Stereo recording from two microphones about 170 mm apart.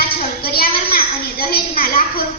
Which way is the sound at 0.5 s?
60° left (ahead or behind).